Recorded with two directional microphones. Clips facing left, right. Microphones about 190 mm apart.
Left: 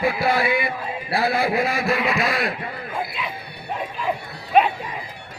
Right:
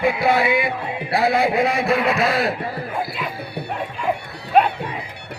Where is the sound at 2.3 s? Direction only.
30° right (ahead or behind).